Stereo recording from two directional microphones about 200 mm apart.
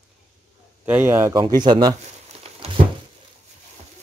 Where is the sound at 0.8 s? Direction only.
10° right (ahead or behind).